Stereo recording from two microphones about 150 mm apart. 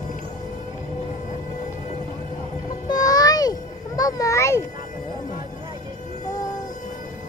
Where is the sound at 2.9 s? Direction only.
25° left (ahead or behind).